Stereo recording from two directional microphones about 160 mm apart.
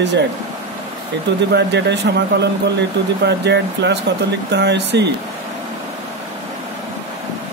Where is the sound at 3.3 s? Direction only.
90° right.